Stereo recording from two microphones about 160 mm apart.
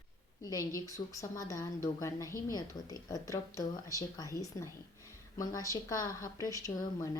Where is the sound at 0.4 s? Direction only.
20° left (ahead or behind).